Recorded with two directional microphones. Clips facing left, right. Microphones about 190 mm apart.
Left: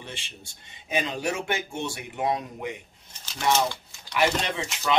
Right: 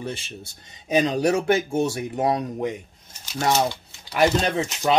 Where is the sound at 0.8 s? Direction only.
40° right (ahead or behind).